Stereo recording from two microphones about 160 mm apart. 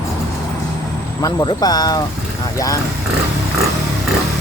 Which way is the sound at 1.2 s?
25° left (ahead or behind).